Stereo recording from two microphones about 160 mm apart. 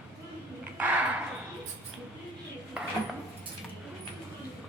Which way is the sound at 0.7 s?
10° right (ahead or behind).